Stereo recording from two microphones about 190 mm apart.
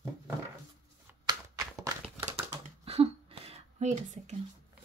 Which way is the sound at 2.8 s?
30° right (ahead or behind).